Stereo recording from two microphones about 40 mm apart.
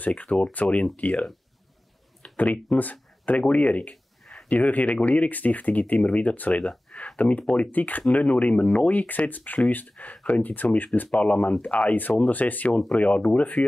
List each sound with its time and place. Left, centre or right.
0.1 s speech: left
2.2 s speech: left
7.4 s speech: left
7.7 s speech: left
11.1 s speech: left